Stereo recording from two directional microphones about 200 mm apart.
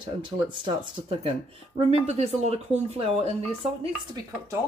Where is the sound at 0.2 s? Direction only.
25° right (ahead or behind).